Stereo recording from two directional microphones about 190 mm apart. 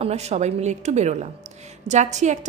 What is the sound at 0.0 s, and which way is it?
A woman's voice, 35° right (ahead or behind).